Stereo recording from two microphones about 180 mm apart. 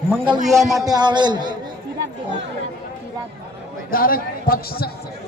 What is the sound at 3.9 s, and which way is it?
Speech, 50° left (ahead or behind).